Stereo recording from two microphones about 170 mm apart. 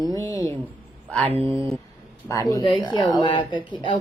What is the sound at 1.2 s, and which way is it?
Speech, 35° right (ahead or behind).